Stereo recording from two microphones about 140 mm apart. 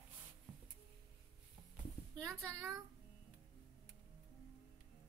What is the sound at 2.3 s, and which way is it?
Speech, 20° right (ahead or behind).